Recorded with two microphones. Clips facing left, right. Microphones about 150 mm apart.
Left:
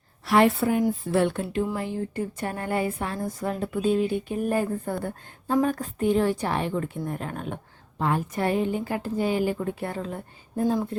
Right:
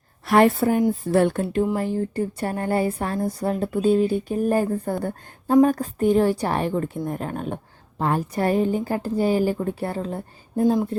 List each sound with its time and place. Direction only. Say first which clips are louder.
0.3 s a woman's voice: right 3 dB; 45° right (ahead or behind)